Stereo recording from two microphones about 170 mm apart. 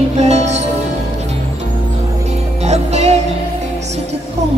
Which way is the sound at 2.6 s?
40° right (ahead or behind).